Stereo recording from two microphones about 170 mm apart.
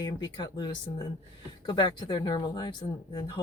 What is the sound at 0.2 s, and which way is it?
Speech, 25° left (ahead or behind).